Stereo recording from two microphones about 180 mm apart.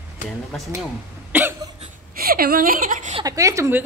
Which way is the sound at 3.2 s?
20° right (ahead or behind).